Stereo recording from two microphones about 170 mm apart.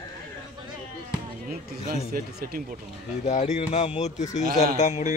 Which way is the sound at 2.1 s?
60° right (ahead or behind).